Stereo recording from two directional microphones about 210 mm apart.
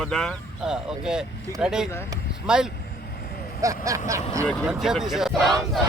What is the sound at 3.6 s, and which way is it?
Speech, 15° right (ahead or behind).